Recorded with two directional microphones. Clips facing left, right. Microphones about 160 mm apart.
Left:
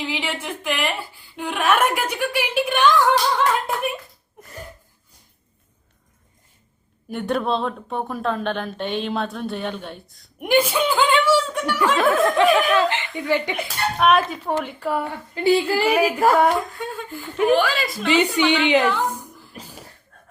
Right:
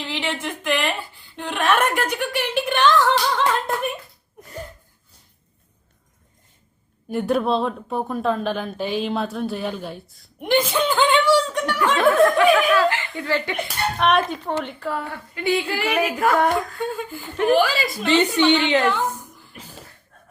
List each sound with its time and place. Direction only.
0.0 s a sound: 10° left (ahead or behind)
1.4 s a woman's voice: 10° left (ahead or behind)
3.3 s a sound: 5° left (ahead or behind)
7.1 s speech: centre (ahead or behind)
10.4 s chuckle: 10° left (ahead or behind)
12.5 s speech: centre (ahead or behind)
12.7 s speech: 20° left (ahead or behind)
13.6 s a woman's voice: 5° left (ahead or behind)
15.4 s a woman's voice: 35° left (ahead or behind)
16.4 s speech: centre (ahead or behind)
18.3 s a woman's voice: 10° left (ahead or behind)